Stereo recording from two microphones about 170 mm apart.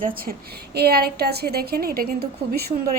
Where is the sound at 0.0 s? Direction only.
60° right (ahead or behind).